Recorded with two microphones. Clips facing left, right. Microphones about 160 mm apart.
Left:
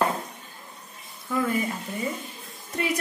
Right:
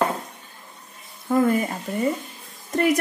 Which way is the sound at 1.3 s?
45° right (ahead or behind).